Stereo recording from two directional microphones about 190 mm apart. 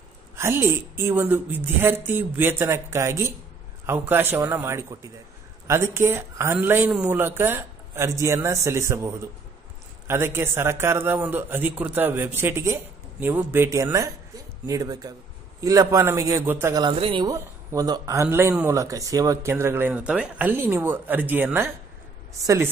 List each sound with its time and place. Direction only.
0.4 s a man's voice: 15° right (ahead or behind)
16.8 s a man's voice: 25° right (ahead or behind)